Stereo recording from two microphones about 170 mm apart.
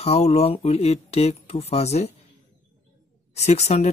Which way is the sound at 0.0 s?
35° left (ahead or behind).